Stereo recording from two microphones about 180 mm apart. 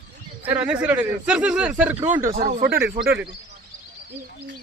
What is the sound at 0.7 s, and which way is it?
Speech, 10° right (ahead or behind).